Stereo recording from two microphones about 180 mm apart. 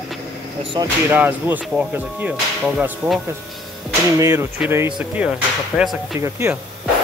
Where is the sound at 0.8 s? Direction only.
25° right (ahead or behind).